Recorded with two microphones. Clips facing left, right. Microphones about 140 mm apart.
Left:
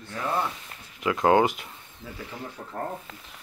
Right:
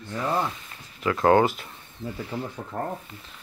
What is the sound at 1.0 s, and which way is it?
Speech, 15° left (ahead or behind).